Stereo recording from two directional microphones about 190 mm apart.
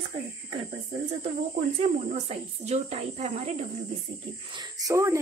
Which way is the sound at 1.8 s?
35° right (ahead or behind).